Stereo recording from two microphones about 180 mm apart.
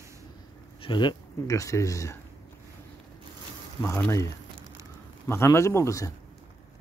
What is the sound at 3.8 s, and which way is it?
Speech, 5° left (ahead or behind).